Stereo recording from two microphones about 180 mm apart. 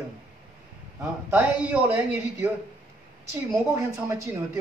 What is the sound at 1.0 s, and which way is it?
Speech, 5° right (ahead or behind).